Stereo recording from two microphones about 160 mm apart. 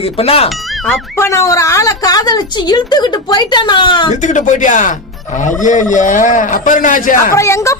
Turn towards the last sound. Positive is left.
turn(degrees=20)  # may be behind; listen again after turning